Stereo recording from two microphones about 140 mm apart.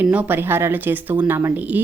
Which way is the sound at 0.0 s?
10° right (ahead or behind).